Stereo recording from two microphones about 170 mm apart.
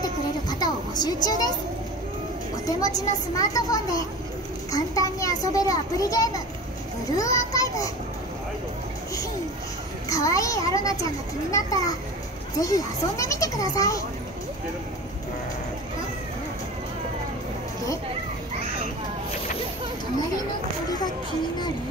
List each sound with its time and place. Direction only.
0.6 s a sound: 25° left (ahead or behind)
2.5 s a child's voice: 20° left (ahead or behind)
10.0 s a child's voice: 20° left (ahead or behind)
12.5 s a child's voice: 20° left (ahead or behind)